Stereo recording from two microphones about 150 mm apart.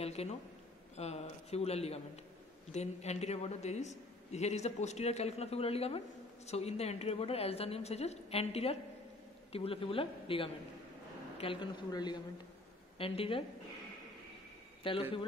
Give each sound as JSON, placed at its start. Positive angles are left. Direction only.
{"t": 0.0, "sound": "a man's voice", "side_deg": 45}
{"t": 12.9, "sound": "a woman's voice", "side_deg": 40}
{"t": 14.8, "sound": "speech", "side_deg": 35}